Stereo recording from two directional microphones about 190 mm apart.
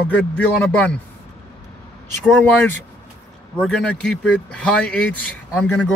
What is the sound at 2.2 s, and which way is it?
Speech, 5° left (ahead or behind).